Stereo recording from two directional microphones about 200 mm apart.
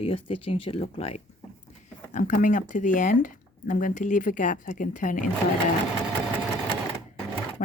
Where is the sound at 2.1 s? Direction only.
40° left (ahead or behind).